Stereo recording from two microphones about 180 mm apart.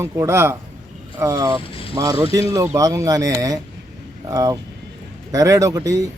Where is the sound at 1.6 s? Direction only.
30° left (ahead or behind).